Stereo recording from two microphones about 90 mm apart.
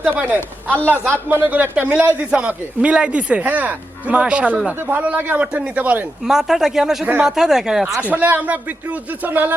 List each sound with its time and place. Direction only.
0.2 s speech: 20° right (ahead or behind)
6.2 s speech: 5° right (ahead or behind)
8.1 s speech: 20° right (ahead or behind)